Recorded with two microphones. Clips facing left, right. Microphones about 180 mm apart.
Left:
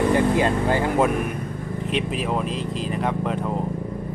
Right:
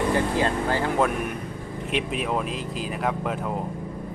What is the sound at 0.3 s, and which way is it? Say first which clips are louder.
Speech: left 3 dB; 15° left (ahead or behind).